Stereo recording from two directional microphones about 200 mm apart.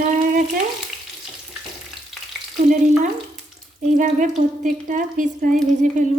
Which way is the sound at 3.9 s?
40° right (ahead or behind).